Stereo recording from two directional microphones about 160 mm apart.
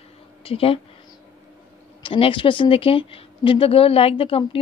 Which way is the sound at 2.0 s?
35° left (ahead or behind).